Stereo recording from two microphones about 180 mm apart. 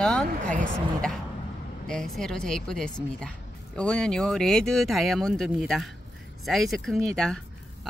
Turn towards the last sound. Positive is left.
turn(degrees=5)  # may be behind; listen again after turning